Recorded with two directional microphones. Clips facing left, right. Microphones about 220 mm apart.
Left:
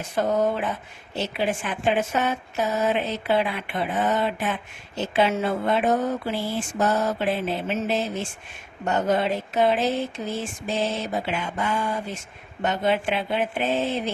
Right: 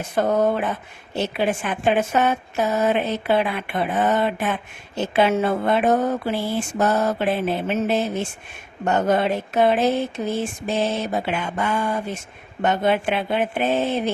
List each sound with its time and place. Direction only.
0.2 s speech: 55° right (ahead or behind)